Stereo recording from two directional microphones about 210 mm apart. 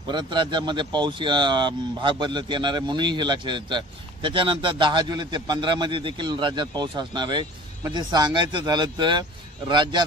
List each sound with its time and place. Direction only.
0.1 s a man's voice: 20° right (ahead or behind)